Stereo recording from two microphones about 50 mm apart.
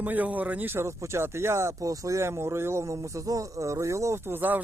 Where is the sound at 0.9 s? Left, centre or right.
Right.